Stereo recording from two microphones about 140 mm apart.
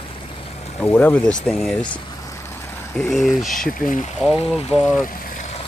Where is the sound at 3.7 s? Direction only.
75° left (ahead or behind).